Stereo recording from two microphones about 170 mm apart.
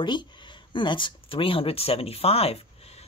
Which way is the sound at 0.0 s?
25° left (ahead or behind).